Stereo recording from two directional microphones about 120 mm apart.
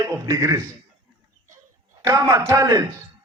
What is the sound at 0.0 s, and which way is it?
Speech, 25° right (ahead or behind).